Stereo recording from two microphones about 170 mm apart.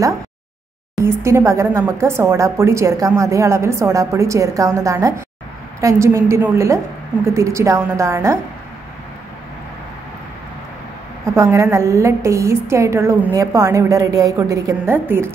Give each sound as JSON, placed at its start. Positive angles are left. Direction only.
{"t": 1.0, "sound": "speech", "side_deg": -15}
{"t": 11.3, "sound": "speech", "side_deg": -15}